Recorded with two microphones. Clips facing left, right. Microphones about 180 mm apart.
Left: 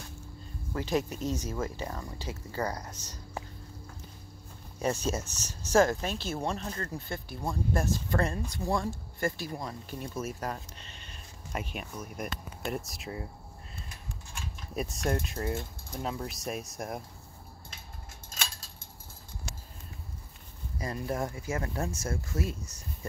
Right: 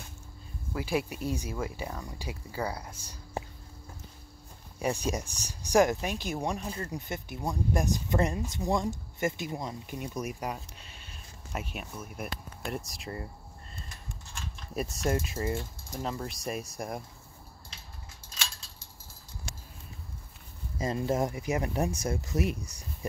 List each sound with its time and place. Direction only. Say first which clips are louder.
0.7 s speech: left 1 dB; 10° right (ahead or behind)
4.7 s speech: even; 10° right (ahead or behind)
14.3 s mechanisms: right 1 dB; centre (ahead or behind)
18.3 s a sound: left 1 dB; 50° left (ahead or behind)
20.7 s speech: right 5 dB; 25° right (ahead or behind)